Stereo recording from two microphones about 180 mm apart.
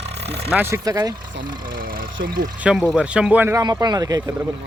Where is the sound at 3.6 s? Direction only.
20° right (ahead or behind).